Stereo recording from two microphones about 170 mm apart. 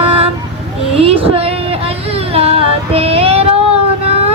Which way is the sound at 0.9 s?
35° right (ahead or behind).